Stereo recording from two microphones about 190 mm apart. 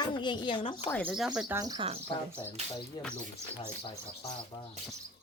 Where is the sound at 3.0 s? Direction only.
25° left (ahead or behind).